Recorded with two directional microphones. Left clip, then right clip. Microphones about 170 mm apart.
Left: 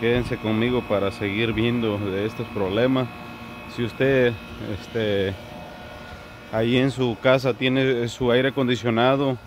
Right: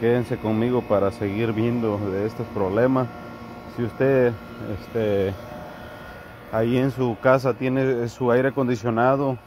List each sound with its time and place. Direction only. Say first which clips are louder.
0.0 s speech: right 1 dB; 5° left (ahead or behind)
6.5 s speech: left 1 dB; 20° left (ahead or behind)